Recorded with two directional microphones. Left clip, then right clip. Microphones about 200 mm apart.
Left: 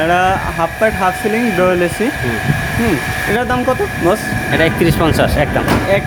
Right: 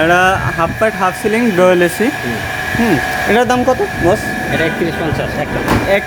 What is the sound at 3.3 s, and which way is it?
Speech, 15° right (ahead or behind).